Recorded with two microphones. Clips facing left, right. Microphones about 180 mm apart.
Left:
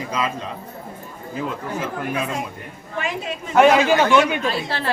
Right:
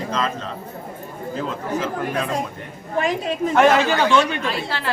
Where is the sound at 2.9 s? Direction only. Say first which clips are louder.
Right 5 dB; 35° right (ahead or behind).